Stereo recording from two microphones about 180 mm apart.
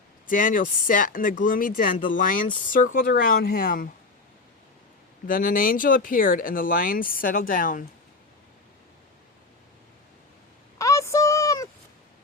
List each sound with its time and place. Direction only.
0.3 s speech: 50° left (ahead or behind)
5.2 s speech: 50° left (ahead or behind)
10.8 s a sound: 15° left (ahead or behind)